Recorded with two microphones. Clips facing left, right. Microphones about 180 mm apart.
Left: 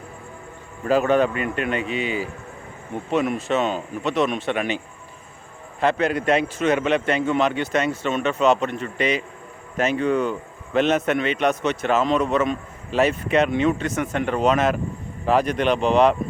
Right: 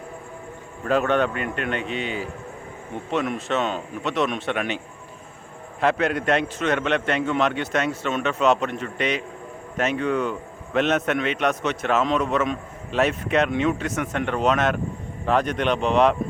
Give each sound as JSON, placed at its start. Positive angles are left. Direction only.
{"t": 0.9, "sound": "a man's voice", "side_deg": 5}
{"t": 5.8, "sound": "a man's voice", "side_deg": 0}